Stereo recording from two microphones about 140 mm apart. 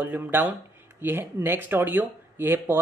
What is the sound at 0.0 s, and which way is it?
Speech, 15° right (ahead or behind).